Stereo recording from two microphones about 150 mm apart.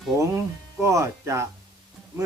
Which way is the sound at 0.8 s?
20° right (ahead or behind).